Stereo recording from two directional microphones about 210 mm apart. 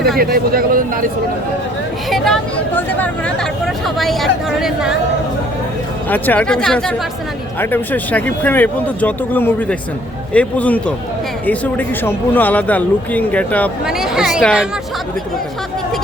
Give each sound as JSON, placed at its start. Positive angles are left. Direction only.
{"t": 0.2, "sound": "speech", "side_deg": -45}
{"t": 2.0, "sound": "speech", "side_deg": 0}
{"t": 6.1, "sound": "speech", "side_deg": 10}